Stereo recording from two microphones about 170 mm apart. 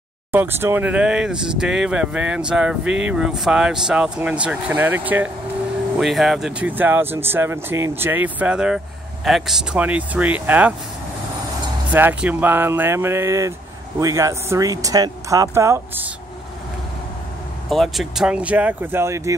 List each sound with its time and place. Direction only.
0.3 s speech: 10° right (ahead or behind)
11.9 s speech: 10° right (ahead or behind)
17.6 s speech: centre (ahead or behind); by 19.3 s 15° right (ahead or behind)